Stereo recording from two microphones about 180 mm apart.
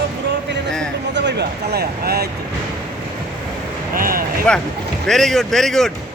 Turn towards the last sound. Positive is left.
turn(degrees=0)  # may be behind; listen again after turning